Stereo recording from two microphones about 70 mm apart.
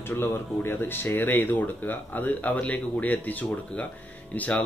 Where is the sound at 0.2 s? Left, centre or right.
Left.